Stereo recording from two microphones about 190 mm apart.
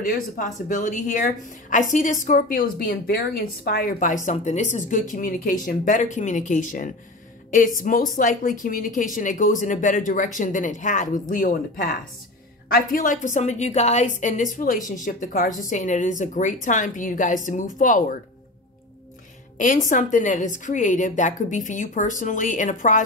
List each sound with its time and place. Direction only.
0.0 s speech: 45° left (ahead or behind)
19.6 s a woman's voice: 45° left (ahead or behind)